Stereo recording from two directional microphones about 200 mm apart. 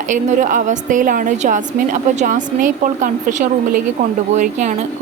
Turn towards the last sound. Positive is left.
turn(degrees=-35)  # may be behind; listen again after turning